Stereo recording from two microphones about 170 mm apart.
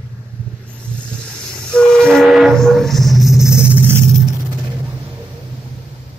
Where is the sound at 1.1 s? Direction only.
5° left (ahead or behind).